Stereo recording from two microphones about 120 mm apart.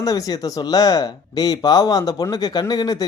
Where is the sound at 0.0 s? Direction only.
30° left (ahead or behind).